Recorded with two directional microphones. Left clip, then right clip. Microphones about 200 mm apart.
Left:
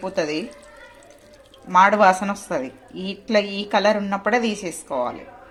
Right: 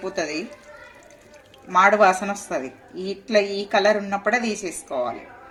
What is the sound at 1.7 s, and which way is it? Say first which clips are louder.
A woman's voice: left 1 dB; 40° left (ahead or behind).